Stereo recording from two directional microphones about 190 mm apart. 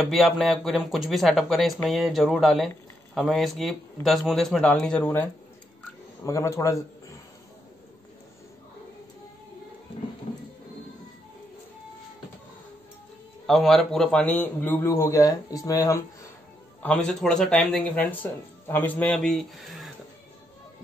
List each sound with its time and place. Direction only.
0.0 s a man's voice: centre (ahead or behind); by 7.2 s 15° left (ahead or behind)
13.5 s a man's voice: centre (ahead or behind); by 16.0 s 15° left (ahead or behind)
16.8 s speech: 5° left (ahead or behind)